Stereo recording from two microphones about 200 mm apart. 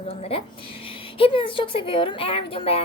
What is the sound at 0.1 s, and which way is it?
A woman's voice, 30° left (ahead or behind).